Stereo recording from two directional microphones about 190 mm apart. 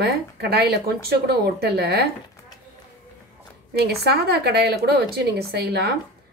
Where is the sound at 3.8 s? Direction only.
60° right (ahead or behind).